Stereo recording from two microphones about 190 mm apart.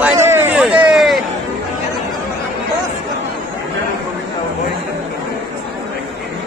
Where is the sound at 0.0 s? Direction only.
15° right (ahead or behind).